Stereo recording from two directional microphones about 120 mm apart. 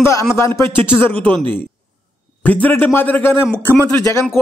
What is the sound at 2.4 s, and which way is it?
A man's voice, 15° left (ahead or behind).